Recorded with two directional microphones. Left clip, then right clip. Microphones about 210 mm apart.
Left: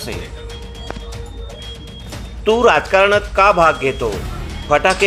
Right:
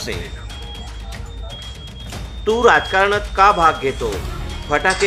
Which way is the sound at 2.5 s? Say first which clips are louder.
Left 1 dB; 15° left (ahead or behind).